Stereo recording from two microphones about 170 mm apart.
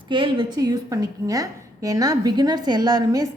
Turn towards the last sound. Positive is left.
turn(degrees=-20)  # may be behind; listen again after turning